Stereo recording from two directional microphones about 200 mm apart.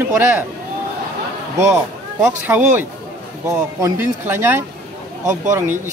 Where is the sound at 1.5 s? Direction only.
10° right (ahead or behind).